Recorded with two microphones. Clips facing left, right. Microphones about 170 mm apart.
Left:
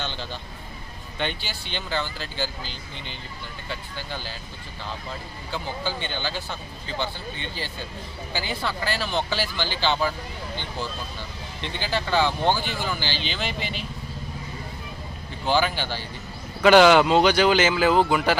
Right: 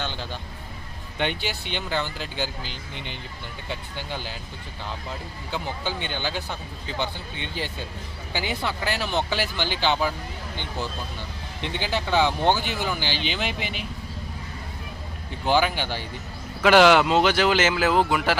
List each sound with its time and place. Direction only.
0.0 s a sound: 10° right (ahead or behind)
1.2 s speech: 15° right (ahead or behind)
5.5 s speech: 15° right (ahead or behind)
11.6 s speech: 20° right (ahead or behind)
15.4 s speech: 15° right (ahead or behind)
16.6 s speech: centre (ahead or behind)